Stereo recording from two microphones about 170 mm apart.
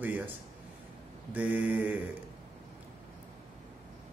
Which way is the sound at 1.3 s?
10° right (ahead or behind).